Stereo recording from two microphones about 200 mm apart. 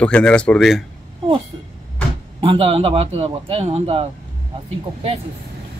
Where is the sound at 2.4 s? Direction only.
30° right (ahead or behind).